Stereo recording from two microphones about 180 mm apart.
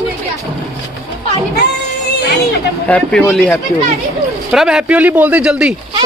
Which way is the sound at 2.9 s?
5° left (ahead or behind).